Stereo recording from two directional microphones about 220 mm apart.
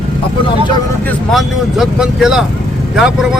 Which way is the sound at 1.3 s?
Centre (ahead or behind).